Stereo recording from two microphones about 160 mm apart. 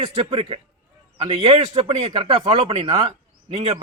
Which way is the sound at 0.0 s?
40° right (ahead or behind).